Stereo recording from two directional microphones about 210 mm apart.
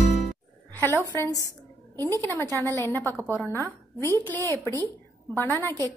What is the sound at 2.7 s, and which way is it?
Speech, 10° left (ahead or behind).